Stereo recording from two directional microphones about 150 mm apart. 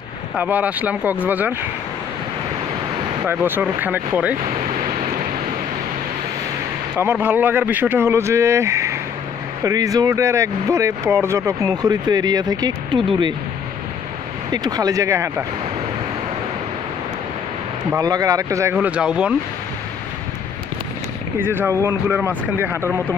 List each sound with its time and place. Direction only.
0.4 s speech: 10° right (ahead or behind)
3.3 s speech: 15° right (ahead or behind)
7.0 s speech: 15° right (ahead or behind)
14.5 s speech: 25° right (ahead or behind)
17.9 s speech: 25° right (ahead or behind); by 19.3 s 5° right (ahead or behind)
21.4 s speech: 15° right (ahead or behind)